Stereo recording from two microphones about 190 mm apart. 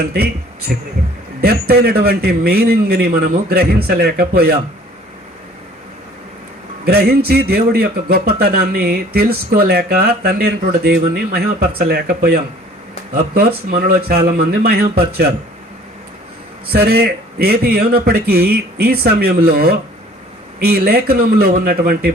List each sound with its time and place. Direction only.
1.4 s a man's voice: 55° right (ahead or behind)
6.8 s a man's voice: 55° right (ahead or behind)
16.7 s a man's voice: 55° right (ahead or behind)